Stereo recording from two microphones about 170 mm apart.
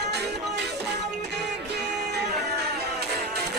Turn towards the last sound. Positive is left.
turn(degrees=-75)  # may be behind; listen again after turning